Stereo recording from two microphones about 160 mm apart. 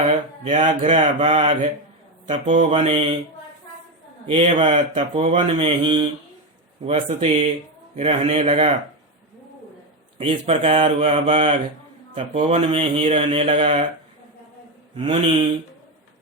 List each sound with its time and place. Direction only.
0.4 s speech: 50° right (ahead or behind)
4.3 s speech: 35° right (ahead or behind)
10.2 s speech: 35° right (ahead or behind)
15.0 s speech: 35° right (ahead or behind)